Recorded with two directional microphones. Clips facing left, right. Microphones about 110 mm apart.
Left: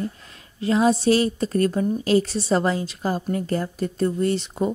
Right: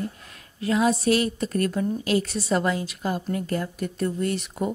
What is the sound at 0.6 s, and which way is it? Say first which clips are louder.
A woman's voice: left 3 dB; 30° left (ahead or behind).